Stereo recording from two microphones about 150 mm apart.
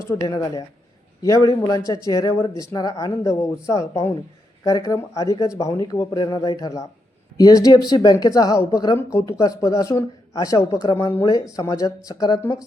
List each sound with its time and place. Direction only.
0.0 s speech: 20° left (ahead or behind)